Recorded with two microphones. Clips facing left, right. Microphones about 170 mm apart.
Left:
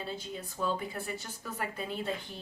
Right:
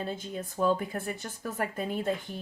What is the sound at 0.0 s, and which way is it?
A woman's voice, 50° right (ahead or behind).